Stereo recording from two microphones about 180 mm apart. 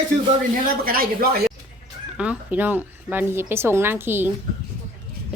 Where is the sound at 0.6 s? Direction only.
55° right (ahead or behind).